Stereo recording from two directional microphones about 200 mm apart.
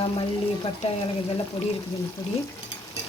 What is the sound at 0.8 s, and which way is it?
Speech, 25° left (ahead or behind).